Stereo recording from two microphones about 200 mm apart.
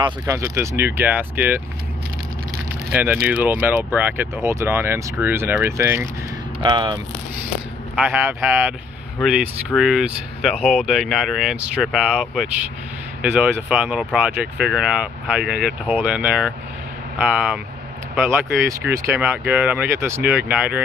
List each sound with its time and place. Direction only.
0.0 s speech: 15° right (ahead or behind)
2.9 s speech: 10° right (ahead or behind)
7.9 s speech: 5° right (ahead or behind)
9.8 s speech: 5° right (ahead or behind)
18.2 s speech: 15° right (ahead or behind)